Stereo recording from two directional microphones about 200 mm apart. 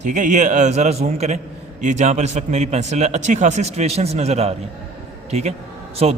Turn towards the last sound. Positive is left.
turn(degrees=-35)  # may be behind; listen again after turning